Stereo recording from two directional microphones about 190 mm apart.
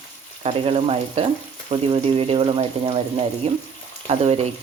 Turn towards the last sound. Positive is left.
turn(degrees=-30)  # may be behind; listen again after turning